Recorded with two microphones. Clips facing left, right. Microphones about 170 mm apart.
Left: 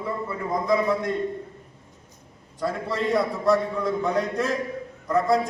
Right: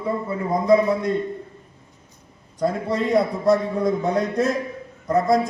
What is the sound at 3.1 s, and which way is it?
A man's voice, 35° right (ahead or behind).